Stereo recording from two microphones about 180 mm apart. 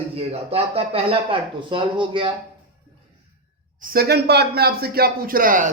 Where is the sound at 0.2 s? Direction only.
35° right (ahead or behind).